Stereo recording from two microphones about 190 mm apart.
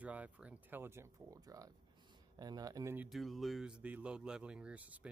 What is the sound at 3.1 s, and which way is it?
Speech, centre (ahead or behind).